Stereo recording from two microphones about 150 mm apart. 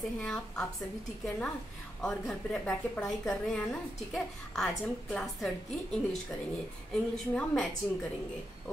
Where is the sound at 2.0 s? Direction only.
5° left (ahead or behind).